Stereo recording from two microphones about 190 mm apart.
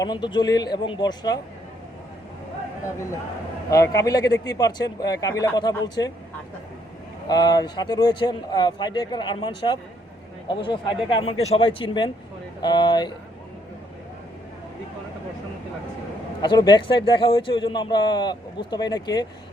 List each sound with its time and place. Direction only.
0.0 s speech: 25° left (ahead or behind)
3.7 s a man's voice: 15° left (ahead or behind)
4.2 s speech: 65° left (ahead or behind)
4.5 s speech: 20° left (ahead or behind)
7.3 s speech: 20° left (ahead or behind)
16.4 s speech: 20° left (ahead or behind)